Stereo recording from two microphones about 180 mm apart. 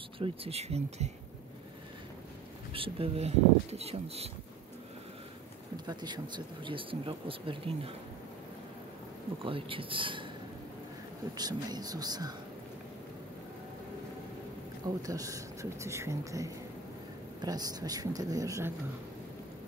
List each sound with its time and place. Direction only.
0.2 s speech: 35° right (ahead or behind)
2.7 s speech: 30° right (ahead or behind)
5.9 s speech: 25° right (ahead or behind)
9.4 s speech: 30° right (ahead or behind)
11.3 s speech: 20° right (ahead or behind)
15.0 s speech: 20° right (ahead or behind)